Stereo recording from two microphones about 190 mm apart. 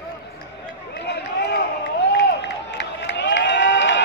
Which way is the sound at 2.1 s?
65° left (ahead or behind).